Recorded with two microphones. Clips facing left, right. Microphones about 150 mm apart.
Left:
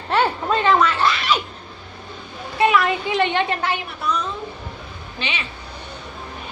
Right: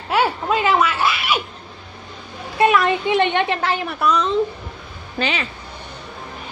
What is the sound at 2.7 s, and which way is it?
Speech, 20° right (ahead or behind).